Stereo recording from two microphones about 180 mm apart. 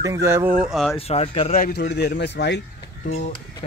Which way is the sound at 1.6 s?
65° left (ahead or behind).